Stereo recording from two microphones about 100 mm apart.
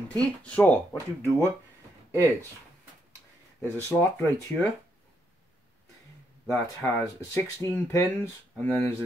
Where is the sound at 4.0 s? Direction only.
25° left (ahead or behind).